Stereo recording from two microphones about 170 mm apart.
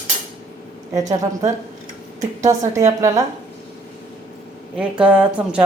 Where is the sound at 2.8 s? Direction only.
20° right (ahead or behind).